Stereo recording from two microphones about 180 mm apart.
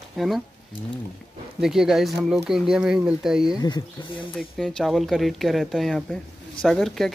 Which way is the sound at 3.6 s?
25° left (ahead or behind).